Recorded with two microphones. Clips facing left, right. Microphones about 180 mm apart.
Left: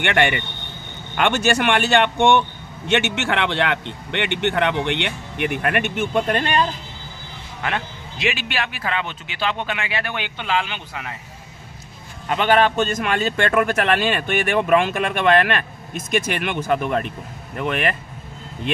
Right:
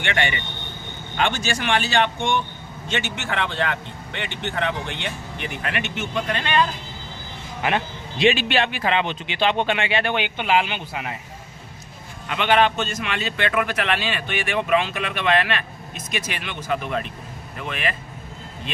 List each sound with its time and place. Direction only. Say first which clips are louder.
0.0 s speech: left 5 dB; 60° left (ahead or behind); by 6.7 s 40° left (ahead or behind)
7.6 s a man's voice: right 3 dB; 25° right (ahead or behind)
12.3 s a man's voice: left 2 dB; 40° left (ahead or behind)